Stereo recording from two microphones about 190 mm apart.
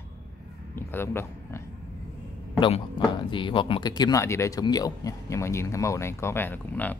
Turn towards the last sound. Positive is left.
turn(degrees=10)  # may be behind; listen again after turning